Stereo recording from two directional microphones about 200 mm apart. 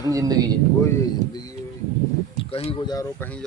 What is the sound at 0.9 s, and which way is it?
Speech, 20° left (ahead or behind).